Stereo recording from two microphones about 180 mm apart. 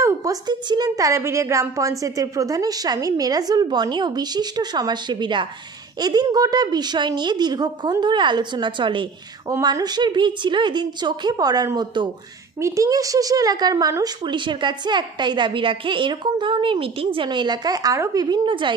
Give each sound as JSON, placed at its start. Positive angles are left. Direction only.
{"t": 0.0, "sound": "a woman's voice", "side_deg": -20}